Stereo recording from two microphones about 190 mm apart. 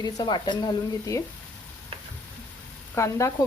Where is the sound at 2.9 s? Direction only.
15° left (ahead or behind).